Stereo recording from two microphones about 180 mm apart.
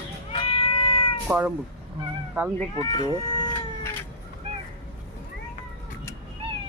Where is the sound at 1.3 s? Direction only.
10° right (ahead or behind).